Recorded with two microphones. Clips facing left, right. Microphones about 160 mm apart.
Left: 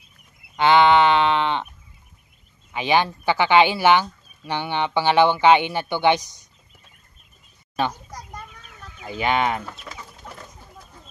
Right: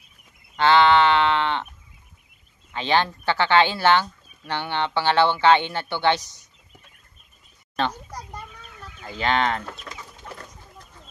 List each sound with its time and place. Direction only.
0.6 s speech: 15° left (ahead or behind)
2.7 s speech: 10° left (ahead or behind)
9.0 s speech: 10° left (ahead or behind)